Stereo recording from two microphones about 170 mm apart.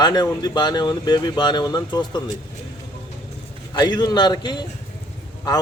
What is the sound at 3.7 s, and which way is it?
Speech, 25° left (ahead or behind).